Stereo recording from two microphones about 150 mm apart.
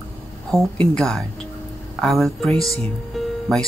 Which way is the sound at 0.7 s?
5° left (ahead or behind).